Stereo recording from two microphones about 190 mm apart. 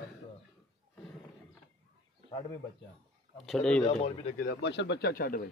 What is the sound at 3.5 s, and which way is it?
Speech, 5° left (ahead or behind).